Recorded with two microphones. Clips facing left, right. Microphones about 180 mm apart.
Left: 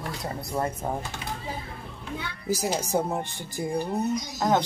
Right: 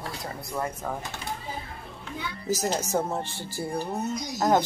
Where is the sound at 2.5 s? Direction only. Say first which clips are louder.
Even; 10° left (ahead or behind).